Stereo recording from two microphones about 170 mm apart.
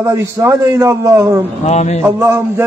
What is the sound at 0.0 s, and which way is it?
A man's voice, 20° right (ahead or behind).